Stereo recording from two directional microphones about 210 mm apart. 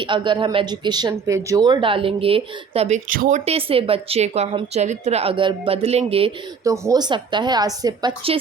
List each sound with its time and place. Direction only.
0.0 s speech: 20° right (ahead or behind)
6.7 s speech: 15° right (ahead or behind)